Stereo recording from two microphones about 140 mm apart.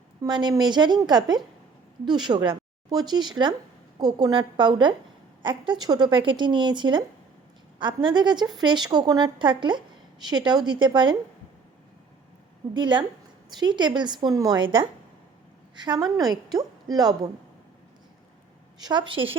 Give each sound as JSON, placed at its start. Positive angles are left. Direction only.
{"t": 0.2, "sound": "a woman's voice", "side_deg": -30}
{"t": 12.7, "sound": "a woman's voice", "side_deg": -35}
{"t": 18.8, "sound": "a woman's voice", "side_deg": -30}